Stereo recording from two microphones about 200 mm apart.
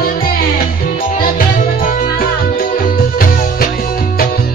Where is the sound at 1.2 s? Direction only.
45° left (ahead or behind).